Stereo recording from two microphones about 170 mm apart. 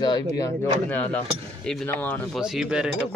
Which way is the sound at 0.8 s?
10° left (ahead or behind).